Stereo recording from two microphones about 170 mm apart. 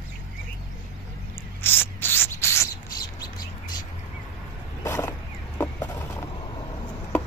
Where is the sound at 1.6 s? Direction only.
10° left (ahead or behind).